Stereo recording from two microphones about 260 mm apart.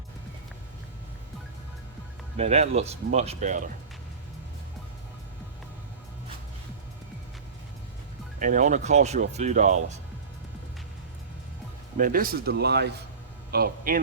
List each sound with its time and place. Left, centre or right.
2.3 s speech: right
8.4 s speech: right
11.9 s a man's voice: right